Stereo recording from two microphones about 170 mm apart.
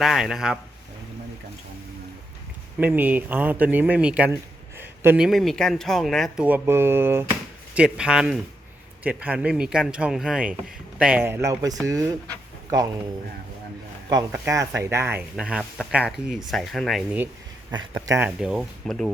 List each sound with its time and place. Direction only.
0.0 s speech: centre (ahead or behind)
2.7 s speech: 10° right (ahead or behind)
14.3 s speech: 15° right (ahead or behind); by 17.0 s centre (ahead or behind)
17.7 s speech: 25° right (ahead or behind)
18.2 s speech: 5° right (ahead or behind)